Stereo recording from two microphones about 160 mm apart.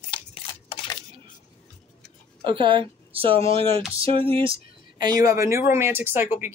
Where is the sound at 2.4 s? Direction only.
30° right (ahead or behind).